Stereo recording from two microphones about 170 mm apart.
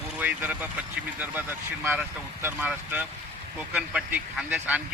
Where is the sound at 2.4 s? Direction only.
10° right (ahead or behind).